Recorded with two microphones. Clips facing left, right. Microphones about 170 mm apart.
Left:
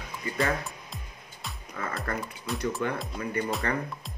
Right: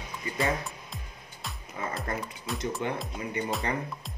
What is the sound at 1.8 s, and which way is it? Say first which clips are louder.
Speech: even; 20° right (ahead or behind).